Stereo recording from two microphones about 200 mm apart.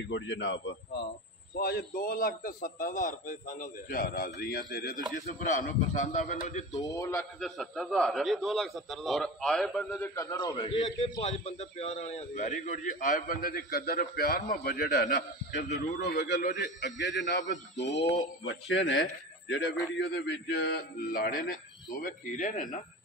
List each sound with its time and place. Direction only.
0.0 s a man's voice: 65° left (ahead or behind)
1.5 s a man's voice: 50° left (ahead or behind)
6.8 s speech: 15° left (ahead or behind)
7.3 s a man's voice: centre (ahead or behind)
10.0 s a man's voice: 15° left (ahead or behind); by 21.5 s 45° left (ahead or behind)
22.0 s a man's voice: 35° left (ahead or behind)